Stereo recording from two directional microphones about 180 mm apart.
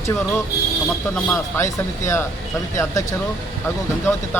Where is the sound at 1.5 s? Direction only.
15° left (ahead or behind).